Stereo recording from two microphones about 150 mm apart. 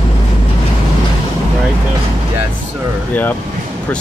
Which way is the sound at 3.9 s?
10° left (ahead or behind).